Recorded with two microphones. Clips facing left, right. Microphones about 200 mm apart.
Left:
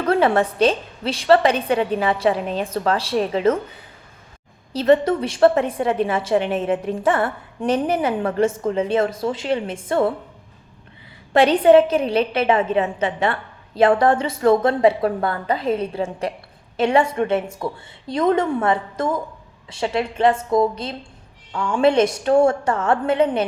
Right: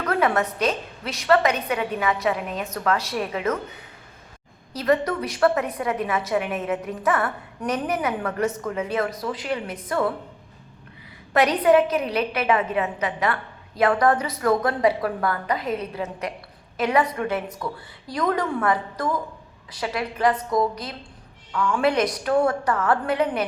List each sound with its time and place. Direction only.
0.0 s a woman's voice: 30° left (ahead or behind)
4.7 s a woman's voice: 25° left (ahead or behind)
11.3 s a woman's voice: 30° left (ahead or behind)